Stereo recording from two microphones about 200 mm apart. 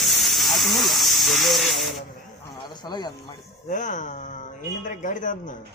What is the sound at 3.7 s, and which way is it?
Speech, 40° left (ahead or behind).